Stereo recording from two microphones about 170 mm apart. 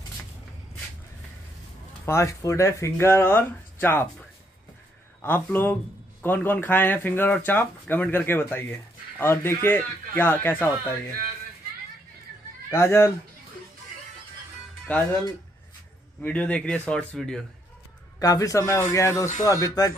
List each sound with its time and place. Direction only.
2.0 s speech: 15° left (ahead or behind)
5.2 s speech: 10° left (ahead or behind)
12.7 s speech: 15° left (ahead or behind)
14.9 s speech: 10° left (ahead or behind)
16.2 s speech: 10° left (ahead or behind)
18.2 s speech: 20° left (ahead or behind)